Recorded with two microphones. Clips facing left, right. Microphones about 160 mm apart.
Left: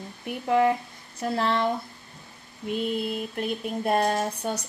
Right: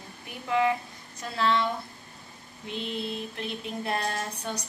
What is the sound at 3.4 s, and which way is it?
Speech, 50° left (ahead or behind).